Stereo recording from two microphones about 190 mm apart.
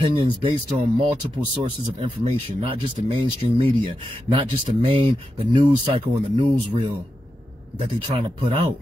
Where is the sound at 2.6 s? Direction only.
30° right (ahead or behind).